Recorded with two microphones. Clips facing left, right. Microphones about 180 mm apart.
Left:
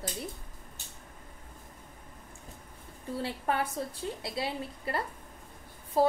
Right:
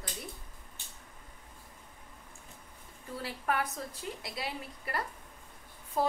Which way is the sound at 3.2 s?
25° left (ahead or behind).